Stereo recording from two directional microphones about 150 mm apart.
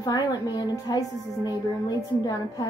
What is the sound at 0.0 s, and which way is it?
A woman's voice, 25° left (ahead or behind).